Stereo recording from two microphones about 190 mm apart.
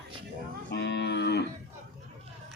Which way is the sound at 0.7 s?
65° left (ahead or behind).